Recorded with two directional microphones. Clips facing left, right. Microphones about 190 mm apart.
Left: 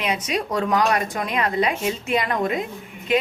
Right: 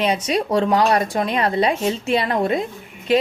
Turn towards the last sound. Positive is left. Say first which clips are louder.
# right 4 dB
turn(degrees=-35)  # may be behind; listen again after turning